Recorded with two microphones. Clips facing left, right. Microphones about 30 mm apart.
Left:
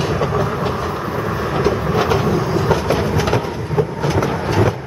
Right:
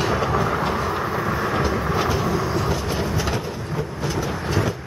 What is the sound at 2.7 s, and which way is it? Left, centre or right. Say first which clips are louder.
Train: left 7 dB; left.